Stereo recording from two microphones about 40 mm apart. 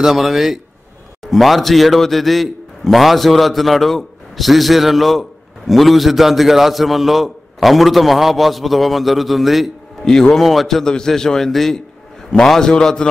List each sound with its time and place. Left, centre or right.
0.0 s a man's voice: centre
10.0 s a man's voice: centre
10.4 s a man's voice: centre
10.8 s a man's voice: centre